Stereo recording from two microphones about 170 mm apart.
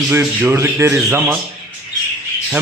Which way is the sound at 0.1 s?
10° right (ahead or behind).